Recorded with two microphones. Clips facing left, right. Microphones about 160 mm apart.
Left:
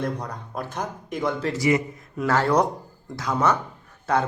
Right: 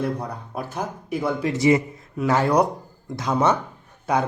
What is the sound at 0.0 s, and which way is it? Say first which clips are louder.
Speech: right 2 dB; 10° right (ahead or behind).